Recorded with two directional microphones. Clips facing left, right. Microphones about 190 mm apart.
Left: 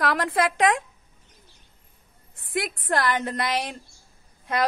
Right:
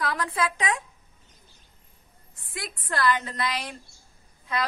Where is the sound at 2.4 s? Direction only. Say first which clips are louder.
Left 9 dB; 55° left (ahead or behind).